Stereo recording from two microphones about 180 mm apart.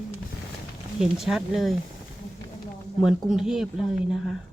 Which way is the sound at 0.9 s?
Centre (ahead or behind).